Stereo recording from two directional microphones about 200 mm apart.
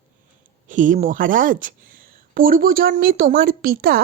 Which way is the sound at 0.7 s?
40° right (ahead or behind).